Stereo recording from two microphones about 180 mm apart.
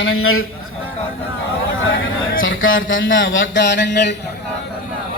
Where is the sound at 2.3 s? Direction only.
90° left; by 4.1 s 75° left (ahead or behind).